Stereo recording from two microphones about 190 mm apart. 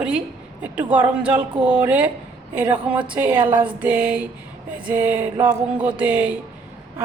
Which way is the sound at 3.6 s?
10° right (ahead or behind).